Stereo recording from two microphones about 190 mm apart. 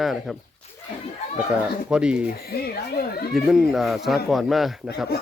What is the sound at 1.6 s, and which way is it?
Speech, 5° right (ahead or behind).